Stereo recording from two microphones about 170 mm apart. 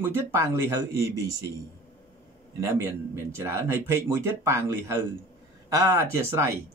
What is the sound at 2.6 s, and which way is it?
A man's voice, 15° right (ahead or behind).